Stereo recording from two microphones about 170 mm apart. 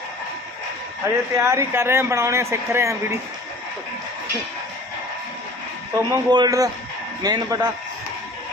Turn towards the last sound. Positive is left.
turn(degrees=-20)  # may be behind; listen again after turning